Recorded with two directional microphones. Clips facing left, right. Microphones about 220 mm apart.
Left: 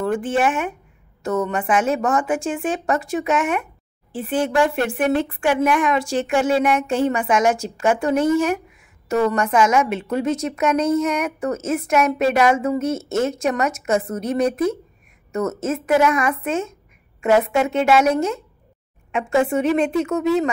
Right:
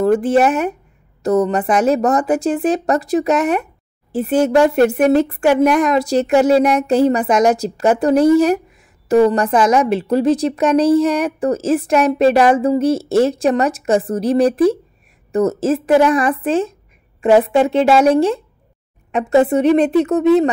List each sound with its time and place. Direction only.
0.0 s a woman's voice: 40° right (ahead or behind)